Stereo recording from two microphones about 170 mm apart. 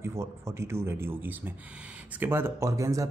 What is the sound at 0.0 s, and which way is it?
A man's voice, 15° right (ahead or behind).